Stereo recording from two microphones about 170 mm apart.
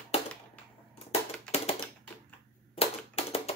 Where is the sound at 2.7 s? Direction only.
35° left (ahead or behind).